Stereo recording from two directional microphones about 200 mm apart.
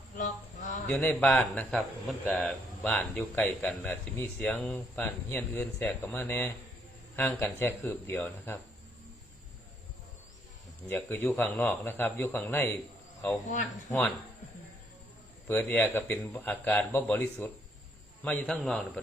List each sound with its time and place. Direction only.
0.2 s a sound: 40° left (ahead or behind)
0.9 s speech: 5° left (ahead or behind)
10.8 s speech: 10° left (ahead or behind)
13.5 s speech: 40° left (ahead or behind)
15.4 s a man's voice: 5° left (ahead or behind)